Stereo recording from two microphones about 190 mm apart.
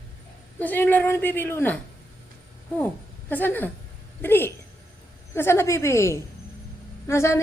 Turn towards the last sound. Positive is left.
turn(degrees=15)  # may be behind; listen again after turning